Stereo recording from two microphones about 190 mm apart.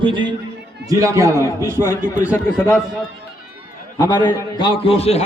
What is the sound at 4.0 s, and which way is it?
A man's voice, 20° left (ahead or behind).